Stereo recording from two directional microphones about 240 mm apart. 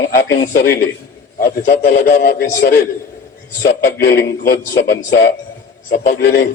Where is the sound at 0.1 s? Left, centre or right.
Left.